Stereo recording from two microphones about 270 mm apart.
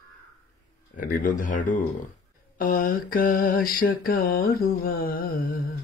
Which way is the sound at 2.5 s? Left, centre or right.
Left.